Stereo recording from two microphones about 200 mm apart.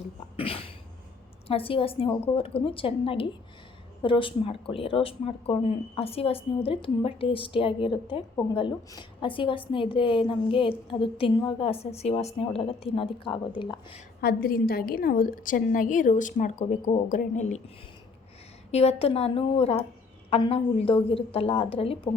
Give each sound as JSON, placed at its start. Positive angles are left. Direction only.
{"t": 0.3, "sound": "a sound", "side_deg": 30}
{"t": 1.5, "sound": "a woman's voice", "side_deg": 25}
{"t": 14.2, "sound": "a woman's voice", "side_deg": 50}
{"t": 18.7, "sound": "a woman's voice", "side_deg": 30}